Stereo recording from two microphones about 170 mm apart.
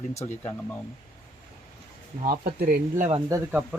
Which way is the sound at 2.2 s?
55° right (ahead or behind).